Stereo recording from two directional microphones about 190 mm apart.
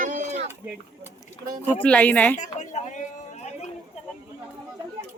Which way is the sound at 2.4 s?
40° left (ahead or behind).